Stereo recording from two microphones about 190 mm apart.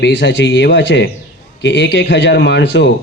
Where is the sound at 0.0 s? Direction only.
70° left (ahead or behind).